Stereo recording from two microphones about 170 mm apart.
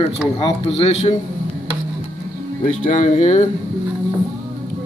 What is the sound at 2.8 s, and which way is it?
Speech, 45° left (ahead or behind).